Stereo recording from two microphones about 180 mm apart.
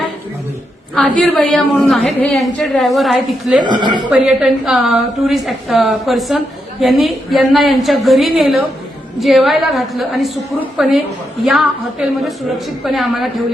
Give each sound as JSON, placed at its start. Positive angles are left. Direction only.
{"t": 1.2, "sound": "a woman's voice", "side_deg": 0}
{"t": 3.6, "sound": "speech", "side_deg": -25}
{"t": 4.1, "sound": "a woman's voice", "side_deg": -5}